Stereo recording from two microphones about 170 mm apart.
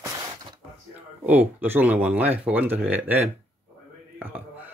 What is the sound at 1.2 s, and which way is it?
Speech, 10° right (ahead or behind).